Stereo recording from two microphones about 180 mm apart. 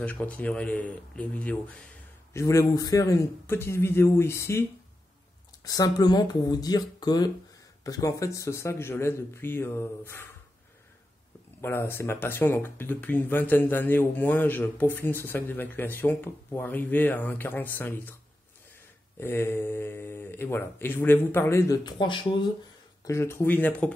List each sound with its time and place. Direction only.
0.0 s speech: 10° left (ahead or behind)
2.3 s speech: 15° left (ahead or behind)
11.6 s speech: 15° left (ahead or behind)
19.1 s speech: 15° left (ahead or behind)
21.9 s speech: 30° left (ahead or behind)
23.0 s speech: 15° left (ahead or behind)